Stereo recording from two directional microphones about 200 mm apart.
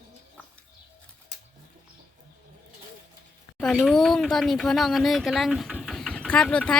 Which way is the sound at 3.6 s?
5° left (ahead or behind).